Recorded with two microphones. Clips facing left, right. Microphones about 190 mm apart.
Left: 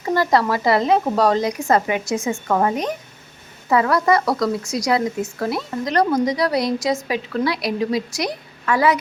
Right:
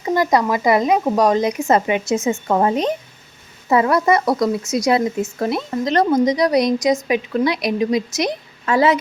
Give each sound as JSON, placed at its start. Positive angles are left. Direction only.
{"t": 0.0, "sound": "speech", "side_deg": -15}